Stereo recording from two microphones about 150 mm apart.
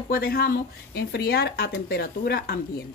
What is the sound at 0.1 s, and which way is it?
Speech, 90° left.